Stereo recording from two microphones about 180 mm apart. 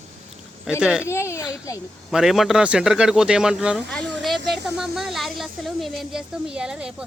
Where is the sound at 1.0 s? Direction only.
15° left (ahead or behind).